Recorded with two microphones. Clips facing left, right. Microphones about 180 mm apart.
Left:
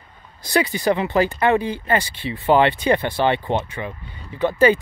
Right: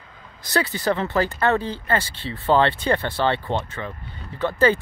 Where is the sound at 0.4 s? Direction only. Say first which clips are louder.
Left 3 dB; 15° left (ahead or behind).